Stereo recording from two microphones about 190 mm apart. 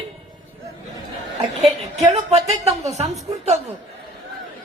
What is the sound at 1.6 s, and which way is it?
Speech, 35° right (ahead or behind).